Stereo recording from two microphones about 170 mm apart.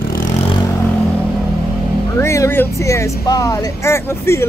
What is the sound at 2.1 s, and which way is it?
Speech, 15° left (ahead or behind).